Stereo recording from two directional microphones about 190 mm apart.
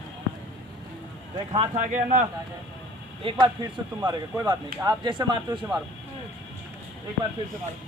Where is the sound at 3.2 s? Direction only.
25° right (ahead or behind).